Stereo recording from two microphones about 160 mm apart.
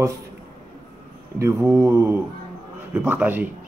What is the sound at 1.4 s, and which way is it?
Speech, 15° right (ahead or behind).